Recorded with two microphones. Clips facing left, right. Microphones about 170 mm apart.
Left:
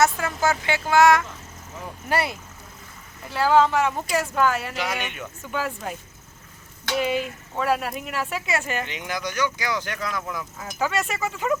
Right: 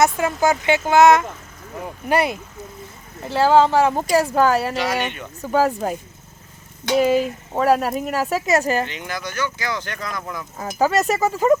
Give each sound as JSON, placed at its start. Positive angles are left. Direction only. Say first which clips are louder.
{"t": 0.0, "sound": "speech", "louder": "right 4 dB", "side_deg": -20}
{"t": 3.2, "sound": "speech", "louder": "right 4 dB", "side_deg": -30}
{"t": 8.9, "sound": "speech", "louder": "even", "side_deg": 15}
{"t": 10.6, "sound": "speech", "louder": "right 8 dB", "side_deg": -40}